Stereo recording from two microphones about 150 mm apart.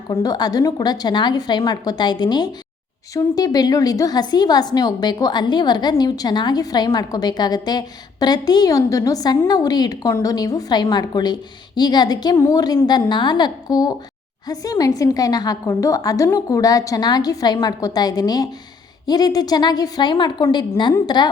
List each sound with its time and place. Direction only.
0.1 s a woman's voice: 25° left (ahead or behind)